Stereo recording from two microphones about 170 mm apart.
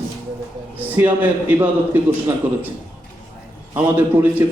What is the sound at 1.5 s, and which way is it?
A man's voice, 10° right (ahead or behind).